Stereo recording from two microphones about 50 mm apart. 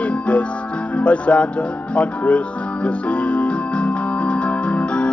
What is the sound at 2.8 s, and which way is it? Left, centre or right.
Keyboard, left.